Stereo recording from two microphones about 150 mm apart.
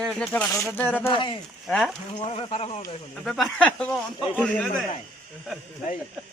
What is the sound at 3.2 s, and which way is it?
Speech, centre (ahead or behind).